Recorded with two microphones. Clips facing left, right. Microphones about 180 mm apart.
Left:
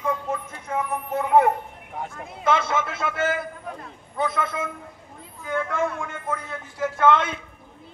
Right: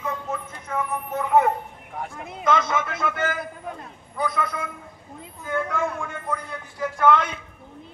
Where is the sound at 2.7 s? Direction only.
30° left (ahead or behind).